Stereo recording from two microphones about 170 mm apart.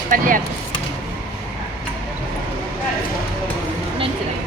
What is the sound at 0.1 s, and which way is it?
Speech, 50° right (ahead or behind).